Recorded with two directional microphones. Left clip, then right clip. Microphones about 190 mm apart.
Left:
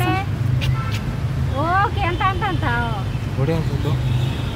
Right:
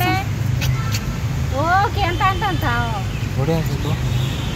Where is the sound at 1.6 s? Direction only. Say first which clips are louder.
Right 2 dB; 30° right (ahead or behind).